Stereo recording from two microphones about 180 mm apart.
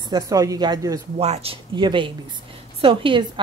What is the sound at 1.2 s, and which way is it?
A woman's voice, 35° right (ahead or behind).